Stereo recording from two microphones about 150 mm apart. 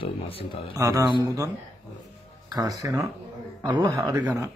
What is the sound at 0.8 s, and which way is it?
Speech, 25° right (ahead or behind).